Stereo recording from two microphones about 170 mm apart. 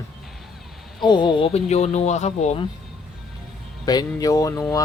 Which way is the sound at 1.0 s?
25° left (ahead or behind).